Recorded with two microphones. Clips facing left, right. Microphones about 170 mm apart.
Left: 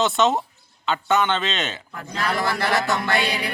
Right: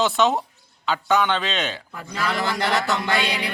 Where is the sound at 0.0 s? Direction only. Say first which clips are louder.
Even; centre (ahead or behind).